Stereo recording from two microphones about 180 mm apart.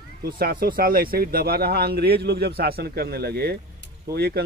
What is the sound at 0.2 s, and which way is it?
Speech, 55° right (ahead or behind).